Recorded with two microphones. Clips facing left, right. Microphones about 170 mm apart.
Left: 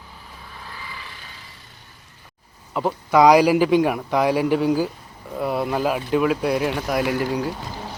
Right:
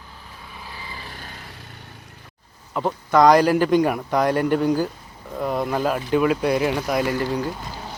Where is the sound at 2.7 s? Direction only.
5° left (ahead or behind).